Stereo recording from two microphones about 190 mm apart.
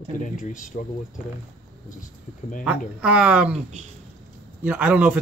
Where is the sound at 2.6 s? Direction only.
5° right (ahead or behind).